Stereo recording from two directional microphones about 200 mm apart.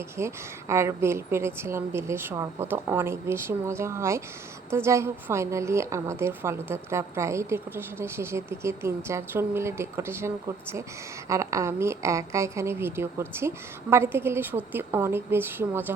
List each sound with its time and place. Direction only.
0.2 s a woman's voice: 15° right (ahead or behind)